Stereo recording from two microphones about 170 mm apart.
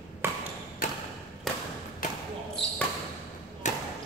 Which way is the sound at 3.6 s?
45° left (ahead or behind).